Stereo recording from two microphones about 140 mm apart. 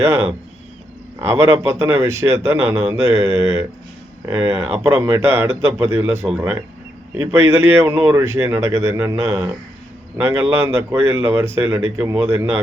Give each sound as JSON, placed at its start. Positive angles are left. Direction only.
{"t": 0.0, "sound": "speech", "side_deg": -20}
{"t": 1.3, "sound": "speech", "side_deg": -20}